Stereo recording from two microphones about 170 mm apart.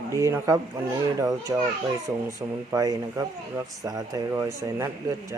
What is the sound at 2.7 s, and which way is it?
Speech, 20° right (ahead or behind).